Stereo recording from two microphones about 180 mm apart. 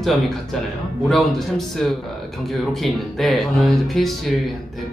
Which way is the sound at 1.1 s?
Centre (ahead or behind).